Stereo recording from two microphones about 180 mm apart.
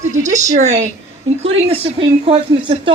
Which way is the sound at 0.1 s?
45° right (ahead or behind).